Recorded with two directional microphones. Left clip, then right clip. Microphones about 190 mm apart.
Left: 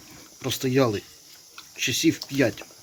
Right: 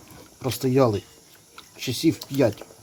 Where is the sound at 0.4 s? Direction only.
5° right (ahead or behind).